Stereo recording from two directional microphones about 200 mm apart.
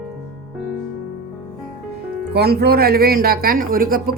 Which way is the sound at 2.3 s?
55° right (ahead or behind).